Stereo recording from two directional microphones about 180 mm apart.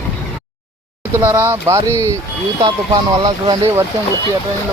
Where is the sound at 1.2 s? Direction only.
10° right (ahead or behind).